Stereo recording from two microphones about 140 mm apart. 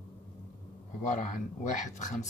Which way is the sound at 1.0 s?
65° left (ahead or behind).